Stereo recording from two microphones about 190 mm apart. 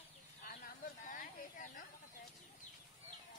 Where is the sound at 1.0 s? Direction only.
45° left (ahead or behind).